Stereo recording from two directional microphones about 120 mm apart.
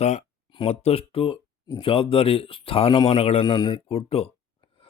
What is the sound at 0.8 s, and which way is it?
Speech, 55° left (ahead or behind).